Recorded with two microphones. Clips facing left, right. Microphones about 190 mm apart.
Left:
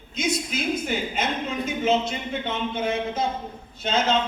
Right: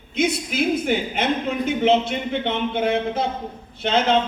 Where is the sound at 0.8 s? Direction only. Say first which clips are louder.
Right 5 dB; 60° right (ahead or behind).